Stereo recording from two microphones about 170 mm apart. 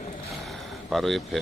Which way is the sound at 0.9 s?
Centre (ahead or behind).